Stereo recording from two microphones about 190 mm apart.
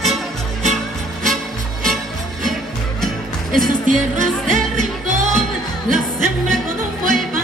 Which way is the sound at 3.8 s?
40° right (ahead or behind).